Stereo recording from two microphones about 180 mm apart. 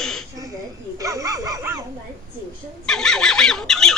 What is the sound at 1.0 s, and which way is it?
Speech, 20° right (ahead or behind).